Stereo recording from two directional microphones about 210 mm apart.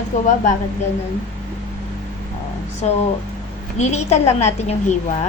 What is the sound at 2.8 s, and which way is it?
A woman's voice, 30° left (ahead or behind).